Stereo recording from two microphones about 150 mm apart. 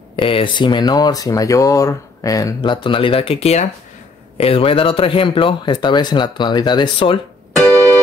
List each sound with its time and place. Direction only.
0.1 s speech: 35° left (ahead or behind)